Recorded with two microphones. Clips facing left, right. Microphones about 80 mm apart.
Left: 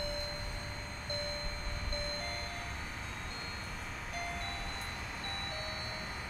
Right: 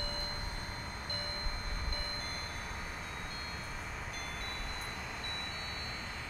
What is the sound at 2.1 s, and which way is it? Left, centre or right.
Vehicle, left.